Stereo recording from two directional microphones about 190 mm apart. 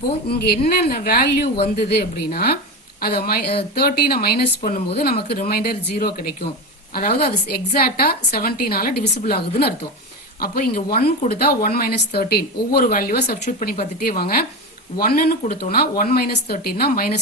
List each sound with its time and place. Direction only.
0.3 s speech: 55° left (ahead or behind)